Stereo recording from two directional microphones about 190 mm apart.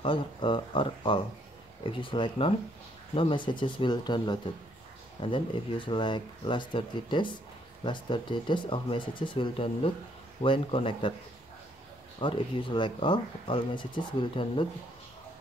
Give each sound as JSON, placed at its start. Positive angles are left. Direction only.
{"t": 0.0, "sound": "speech", "side_deg": 25}
{"t": 12.2, "sound": "speech", "side_deg": 25}